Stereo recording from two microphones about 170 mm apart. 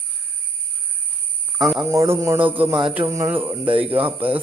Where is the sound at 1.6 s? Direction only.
Centre (ahead or behind).